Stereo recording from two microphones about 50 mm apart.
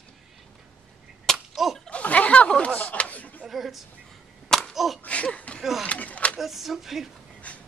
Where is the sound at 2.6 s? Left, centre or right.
Left.